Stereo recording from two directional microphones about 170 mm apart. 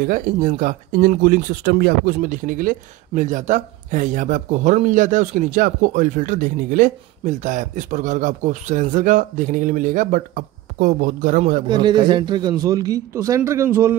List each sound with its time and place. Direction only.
0.0 s speech: 55° right (ahead or behind); by 2.1 s 70° right (ahead or behind)
2.1 s speech: 55° right (ahead or behind)
11.7 s a man's voice: 25° right (ahead or behind)